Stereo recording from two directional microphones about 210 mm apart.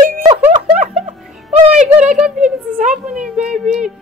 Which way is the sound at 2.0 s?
5° right (ahead or behind).